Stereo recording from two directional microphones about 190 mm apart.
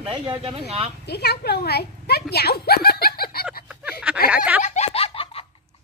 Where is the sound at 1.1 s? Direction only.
60° left (ahead or behind).